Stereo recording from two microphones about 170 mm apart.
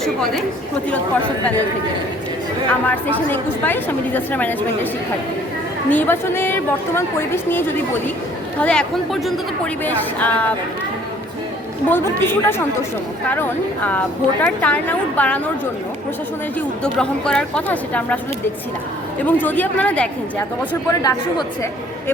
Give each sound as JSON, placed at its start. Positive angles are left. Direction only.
{"t": 0.0, "sound": "a woman's voice", "side_deg": 0}
{"t": 2.8, "sound": "a woman's voice", "side_deg": 10}
{"t": 5.9, "sound": "a woman's voice", "side_deg": 10}
{"t": 8.6, "sound": "a woman's voice", "side_deg": 5}
{"t": 11.9, "sound": "a woman's voice", "side_deg": 15}
{"t": 16.6, "sound": "a woman's voice", "side_deg": 5}
{"t": 19.2, "sound": "a woman's voice", "side_deg": 10}
{"t": 21.0, "sound": "a woman's voice", "side_deg": 20}